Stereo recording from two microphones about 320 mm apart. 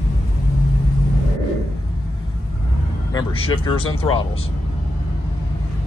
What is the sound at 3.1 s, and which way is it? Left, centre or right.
Speech, centre.